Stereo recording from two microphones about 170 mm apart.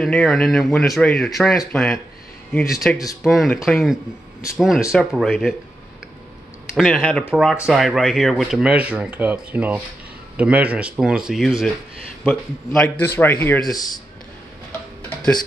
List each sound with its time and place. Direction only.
0.0 s speech: 5° left (ahead or behind)
6.7 s speech: centre (ahead or behind)
7.1 s speech: 10° left (ahead or behind)
7.6 s speech: centre (ahead or behind)
13.7 s speech: 20° left (ahead or behind)